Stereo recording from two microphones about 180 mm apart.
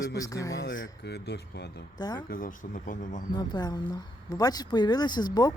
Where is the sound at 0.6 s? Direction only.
80° left.